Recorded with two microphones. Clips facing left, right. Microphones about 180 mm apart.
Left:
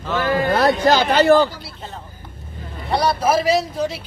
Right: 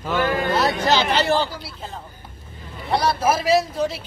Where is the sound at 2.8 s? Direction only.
Centre (ahead or behind).